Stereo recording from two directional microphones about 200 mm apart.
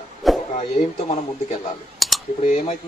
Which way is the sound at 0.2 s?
Centre (ahead or behind).